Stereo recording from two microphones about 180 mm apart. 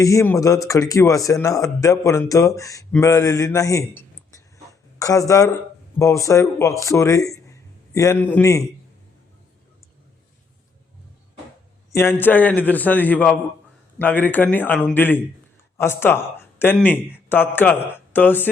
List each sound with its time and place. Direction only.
0.0 s speech: 15° left (ahead or behind)
11.9 s a man's voice: 15° left (ahead or behind)